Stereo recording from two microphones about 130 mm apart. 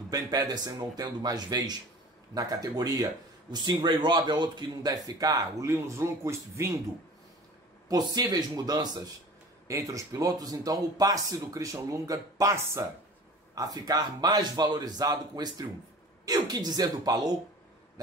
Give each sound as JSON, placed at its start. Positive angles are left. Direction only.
{"t": 0.1, "sound": "a man's voice", "side_deg": -30}
{"t": 7.9, "sound": "a man's voice", "side_deg": -30}